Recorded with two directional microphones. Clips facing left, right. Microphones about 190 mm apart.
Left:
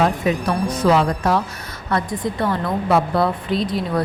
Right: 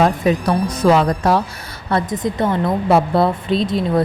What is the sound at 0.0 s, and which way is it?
A woman's voice, 40° right (ahead or behind).